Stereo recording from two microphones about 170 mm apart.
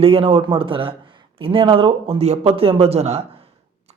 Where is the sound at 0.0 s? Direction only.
35° right (ahead or behind).